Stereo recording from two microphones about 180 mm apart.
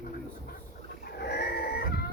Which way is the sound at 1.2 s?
65° left (ahead or behind).